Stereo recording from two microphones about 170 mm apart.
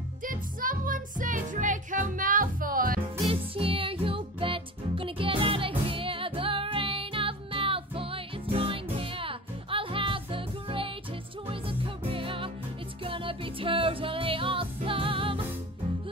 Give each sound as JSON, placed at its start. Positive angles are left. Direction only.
{"t": 0.2, "sound": "music", "side_deg": -55}
{"t": 3.3, "sound": "music", "side_deg": -35}